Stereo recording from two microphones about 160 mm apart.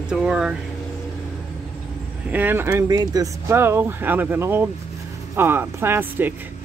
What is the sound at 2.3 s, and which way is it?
Speech, 10° right (ahead or behind).